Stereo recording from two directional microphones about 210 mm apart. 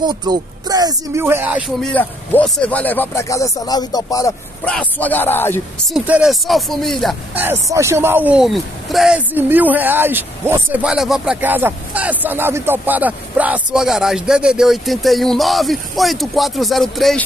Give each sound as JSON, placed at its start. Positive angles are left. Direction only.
{"t": 0.0, "sound": "speech", "side_deg": -20}
{"t": 1.8, "sound": "speech", "side_deg": 5}
{"t": 4.6, "sound": "speech", "side_deg": 5}
{"t": 5.9, "sound": "speech", "side_deg": -5}
{"t": 7.4, "sound": "speech", "side_deg": -15}